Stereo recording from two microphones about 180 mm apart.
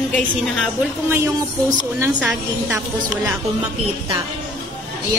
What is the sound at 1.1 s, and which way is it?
A woman's voice, 15° right (ahead or behind).